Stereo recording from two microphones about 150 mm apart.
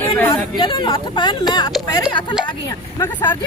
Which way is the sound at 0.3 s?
30° left (ahead or behind).